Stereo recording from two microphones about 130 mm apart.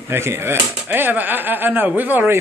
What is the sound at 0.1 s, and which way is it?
Speech, 20° right (ahead or behind).